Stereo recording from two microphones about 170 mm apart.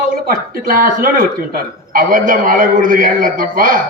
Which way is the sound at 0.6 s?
55° right (ahead or behind).